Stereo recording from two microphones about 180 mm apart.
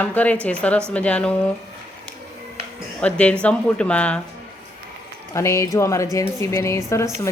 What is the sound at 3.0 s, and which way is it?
A woman's voice, 5° left (ahead or behind).